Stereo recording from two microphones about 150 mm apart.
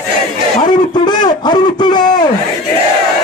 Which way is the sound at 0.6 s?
30° left (ahead or behind).